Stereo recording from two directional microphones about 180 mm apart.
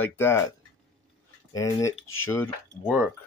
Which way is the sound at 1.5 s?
15° left (ahead or behind).